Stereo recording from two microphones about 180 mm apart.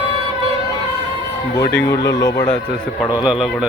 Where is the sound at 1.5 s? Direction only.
15° left (ahead or behind).